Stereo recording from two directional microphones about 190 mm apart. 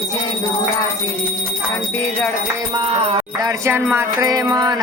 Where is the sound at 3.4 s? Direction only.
15° right (ahead or behind).